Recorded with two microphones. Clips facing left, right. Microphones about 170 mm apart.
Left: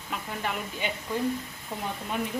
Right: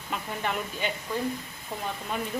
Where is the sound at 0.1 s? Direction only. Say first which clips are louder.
Right 2 dB; 5° left (ahead or behind).